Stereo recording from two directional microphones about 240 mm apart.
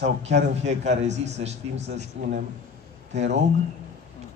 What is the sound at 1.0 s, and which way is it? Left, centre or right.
Speech, right.